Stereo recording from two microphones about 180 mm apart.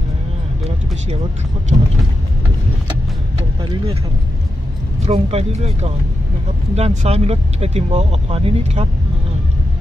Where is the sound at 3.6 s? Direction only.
30° right (ahead or behind).